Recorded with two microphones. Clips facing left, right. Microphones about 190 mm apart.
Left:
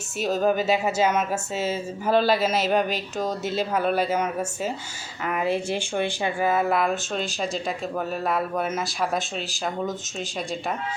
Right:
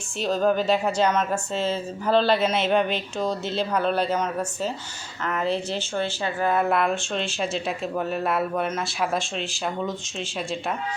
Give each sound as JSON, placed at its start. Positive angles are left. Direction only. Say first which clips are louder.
{"t": 0.2, "sound": "a woman's voice", "louder": "even", "side_deg": 5}
{"t": 3.2, "sound": "speech", "louder": "even", "side_deg": 45}
{"t": 3.5, "sound": "a woman's voice", "louder": "left 2 dB", "side_deg": 5}
{"t": 6.5, "sound": "speech", "louder": "right 2 dB", "side_deg": 0}